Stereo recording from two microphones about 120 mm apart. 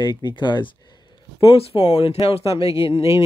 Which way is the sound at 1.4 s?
55° left (ahead or behind).